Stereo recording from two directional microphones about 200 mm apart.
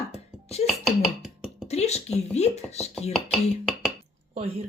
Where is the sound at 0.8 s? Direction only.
5° right (ahead or behind).